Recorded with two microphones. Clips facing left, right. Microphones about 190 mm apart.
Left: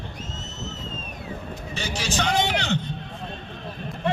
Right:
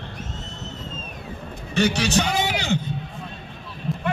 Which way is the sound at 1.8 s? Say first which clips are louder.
Right 10 dB; 65° right (ahead or behind).